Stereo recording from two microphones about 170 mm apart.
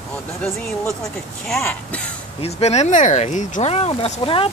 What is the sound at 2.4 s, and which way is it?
Speech, 40° left (ahead or behind).